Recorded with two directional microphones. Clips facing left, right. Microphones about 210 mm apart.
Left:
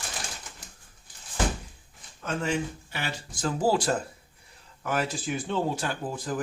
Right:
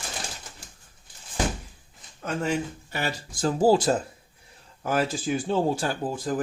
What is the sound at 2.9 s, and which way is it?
Speech, 40° right (ahead or behind).